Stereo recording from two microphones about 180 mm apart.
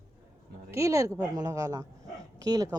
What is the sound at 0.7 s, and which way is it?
Speech, 15° right (ahead or behind).